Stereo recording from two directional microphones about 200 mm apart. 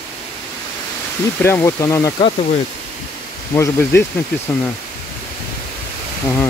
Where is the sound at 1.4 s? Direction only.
15° left (ahead or behind).